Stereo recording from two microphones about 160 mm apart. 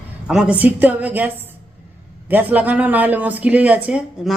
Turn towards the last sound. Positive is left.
turn(degrees=-5)  # may be behind; listen again after turning